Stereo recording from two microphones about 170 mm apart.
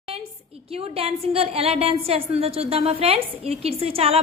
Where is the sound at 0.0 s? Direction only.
35° right (ahead or behind).